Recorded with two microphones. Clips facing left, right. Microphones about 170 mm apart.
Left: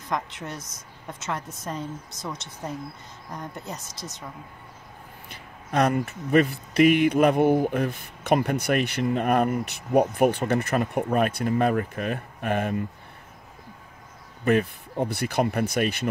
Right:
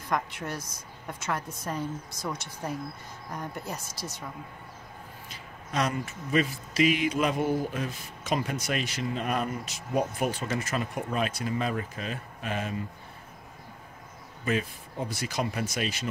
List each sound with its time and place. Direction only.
0.4 s a woman's voice: 20° left (ahead or behind)
5.3 s speech: 55° left (ahead or behind)
14.4 s speech: 60° left (ahead or behind)